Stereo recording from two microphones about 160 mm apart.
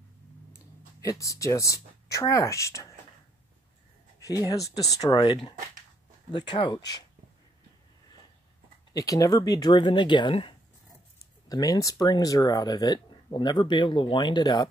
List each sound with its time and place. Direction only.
1.1 s speech: 20° left (ahead or behind)
4.2 s speech: 20° left (ahead or behind)
8.9 s speech: 20° left (ahead or behind)